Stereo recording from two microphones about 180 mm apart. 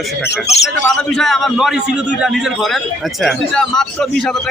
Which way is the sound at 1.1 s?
Centre (ahead or behind).